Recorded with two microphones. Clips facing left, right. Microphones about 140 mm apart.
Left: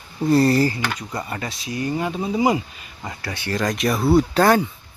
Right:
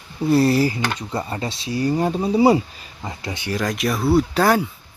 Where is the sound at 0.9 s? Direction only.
30° right (ahead or behind).